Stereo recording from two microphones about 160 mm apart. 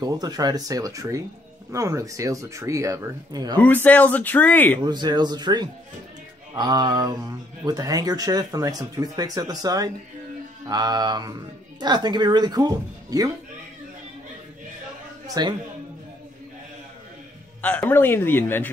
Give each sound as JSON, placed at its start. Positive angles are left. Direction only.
{"t": 0.0, "sound": "speech", "side_deg": -25}
{"t": 3.5, "sound": "speech", "side_deg": 10}
{"t": 4.8, "sound": "speech", "side_deg": -25}
{"t": 15.2, "sound": "a man's voice", "side_deg": -25}
{"t": 17.6, "sound": "speech", "side_deg": 10}